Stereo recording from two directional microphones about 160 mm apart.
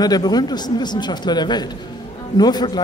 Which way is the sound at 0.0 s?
25° left (ahead or behind).